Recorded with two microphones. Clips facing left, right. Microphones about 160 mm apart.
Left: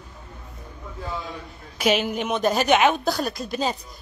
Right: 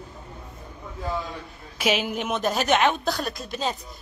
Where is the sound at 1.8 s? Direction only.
Centre (ahead or behind).